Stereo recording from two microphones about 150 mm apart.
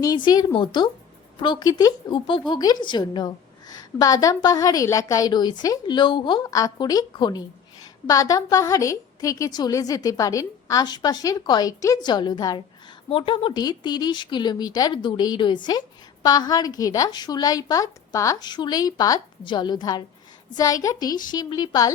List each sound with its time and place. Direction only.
0.0 s a woman's voice: 25° left (ahead or behind)